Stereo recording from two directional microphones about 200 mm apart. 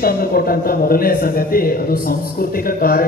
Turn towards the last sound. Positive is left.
turn(degrees=45)  # may be behind; listen again after turning